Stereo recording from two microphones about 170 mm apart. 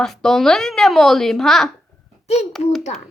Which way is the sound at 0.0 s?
Centre (ahead or behind).